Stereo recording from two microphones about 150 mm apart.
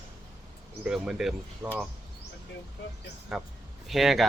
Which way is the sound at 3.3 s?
Centre (ahead or behind).